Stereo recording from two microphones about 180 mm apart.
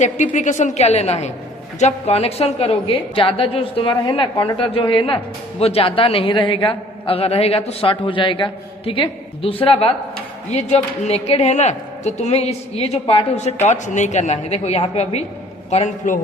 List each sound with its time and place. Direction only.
0.0 s a woman's voice: 40° left (ahead or behind)